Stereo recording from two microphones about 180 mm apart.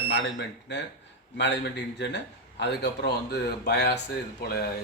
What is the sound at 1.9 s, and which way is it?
A man's voice, 75° left (ahead or behind).